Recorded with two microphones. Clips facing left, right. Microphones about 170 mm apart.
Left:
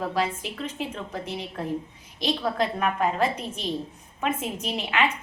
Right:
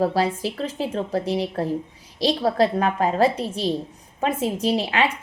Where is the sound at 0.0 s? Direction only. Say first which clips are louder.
Right 6 dB; 35° right (ahead or behind).